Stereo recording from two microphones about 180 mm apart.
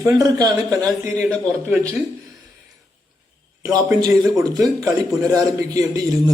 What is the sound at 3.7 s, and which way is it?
Speech, 20° right (ahead or behind).